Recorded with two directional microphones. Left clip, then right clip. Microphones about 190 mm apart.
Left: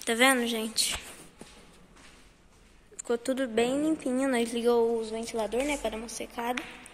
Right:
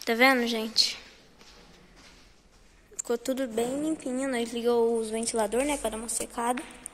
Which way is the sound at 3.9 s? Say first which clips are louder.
Left 2 dB; 10° left (ahead or behind).